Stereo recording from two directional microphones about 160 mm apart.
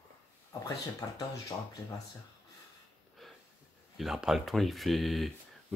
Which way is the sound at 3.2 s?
Centre (ahead or behind).